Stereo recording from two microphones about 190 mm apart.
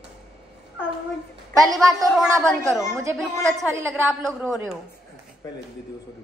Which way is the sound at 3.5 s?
15° right (ahead or behind).